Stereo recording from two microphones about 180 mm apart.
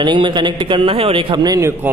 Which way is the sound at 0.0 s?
25° right (ahead or behind).